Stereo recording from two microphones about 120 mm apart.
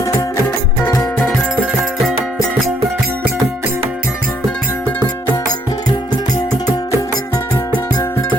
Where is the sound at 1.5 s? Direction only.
Centre (ahead or behind).